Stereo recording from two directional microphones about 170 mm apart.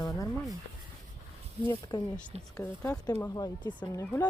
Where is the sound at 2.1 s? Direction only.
5° left (ahead or behind).